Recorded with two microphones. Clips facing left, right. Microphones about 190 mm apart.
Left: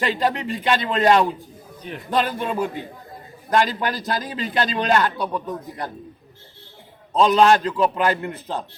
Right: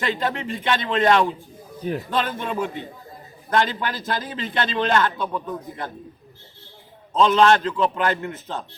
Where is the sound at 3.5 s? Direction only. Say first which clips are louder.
Left 2 dB; 40° left (ahead or behind).